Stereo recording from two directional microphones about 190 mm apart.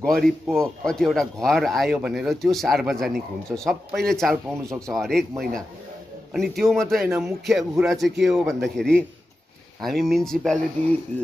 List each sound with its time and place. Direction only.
0.0 s speech: centre (ahead or behind)
4.6 s speech: 15° right (ahead or behind)
4.9 s speech: centre (ahead or behind)
6.3 s speech: centre (ahead or behind)
7.1 s speech: 15° right (ahead or behind)
7.4 s speech: centre (ahead or behind)